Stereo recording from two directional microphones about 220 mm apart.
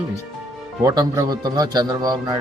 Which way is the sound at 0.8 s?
15° right (ahead or behind).